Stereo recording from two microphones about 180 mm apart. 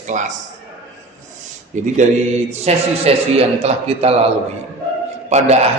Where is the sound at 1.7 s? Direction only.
45° right (ahead or behind).